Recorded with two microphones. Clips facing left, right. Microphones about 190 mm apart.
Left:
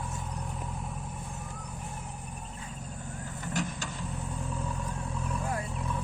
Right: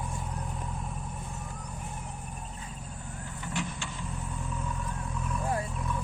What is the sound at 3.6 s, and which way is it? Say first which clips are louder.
Vehicle: left 2 dB; 40° left (ahead or behind).